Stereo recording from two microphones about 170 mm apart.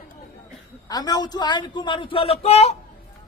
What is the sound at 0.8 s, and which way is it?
A man's voice, 20° left (ahead or behind).